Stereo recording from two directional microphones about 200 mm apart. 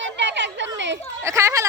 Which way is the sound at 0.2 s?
60° right (ahead or behind).